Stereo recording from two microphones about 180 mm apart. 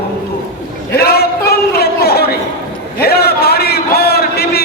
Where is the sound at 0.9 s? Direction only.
60° left (ahead or behind).